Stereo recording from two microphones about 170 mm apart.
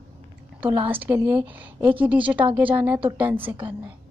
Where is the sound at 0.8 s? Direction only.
10° right (ahead or behind).